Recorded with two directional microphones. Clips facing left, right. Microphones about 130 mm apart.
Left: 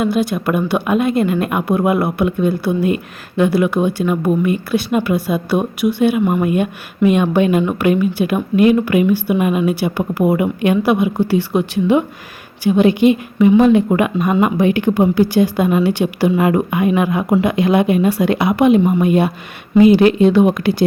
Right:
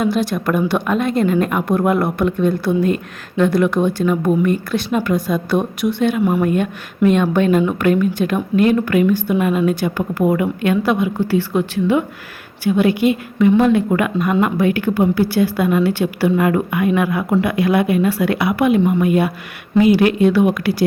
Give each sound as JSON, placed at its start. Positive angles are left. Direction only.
{"t": 0.0, "sound": "speech", "side_deg": 0}